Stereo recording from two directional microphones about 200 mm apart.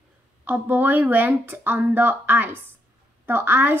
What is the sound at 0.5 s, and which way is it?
Speech, 10° right (ahead or behind).